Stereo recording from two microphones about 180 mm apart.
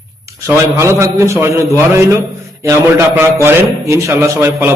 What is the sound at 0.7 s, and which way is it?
A man's voice, 15° right (ahead or behind).